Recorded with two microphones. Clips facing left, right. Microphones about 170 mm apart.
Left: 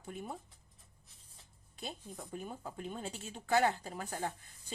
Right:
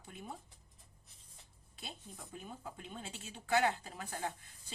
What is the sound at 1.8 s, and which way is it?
Speech, 45° left (ahead or behind).